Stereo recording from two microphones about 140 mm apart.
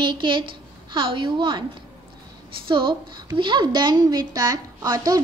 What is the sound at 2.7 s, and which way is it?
A woman's voice, 35° right (ahead or behind).